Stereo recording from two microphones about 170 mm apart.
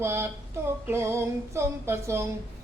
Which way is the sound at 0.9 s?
15° right (ahead or behind).